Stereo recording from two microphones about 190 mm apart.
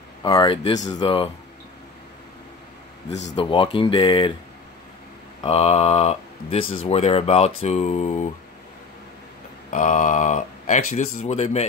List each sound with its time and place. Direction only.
0.2 s speech: 20° left (ahead or behind)
3.3 s speech: 25° left (ahead or behind)
5.4 s speech: 35° left (ahead or behind)
9.7 s speech: 40° left (ahead or behind)